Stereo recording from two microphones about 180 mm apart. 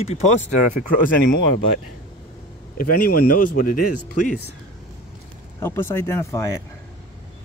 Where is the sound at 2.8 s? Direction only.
55° left (ahead or behind).